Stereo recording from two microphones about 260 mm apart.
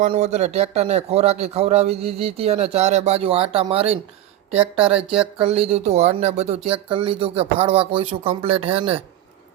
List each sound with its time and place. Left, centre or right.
0.0 s a man's voice: right